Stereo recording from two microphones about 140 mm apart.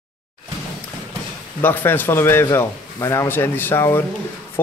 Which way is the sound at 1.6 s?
15° left (ahead or behind).